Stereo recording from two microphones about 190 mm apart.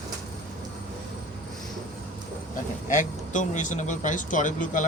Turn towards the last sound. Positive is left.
turn(degrees=45)  # may be behind; listen again after turning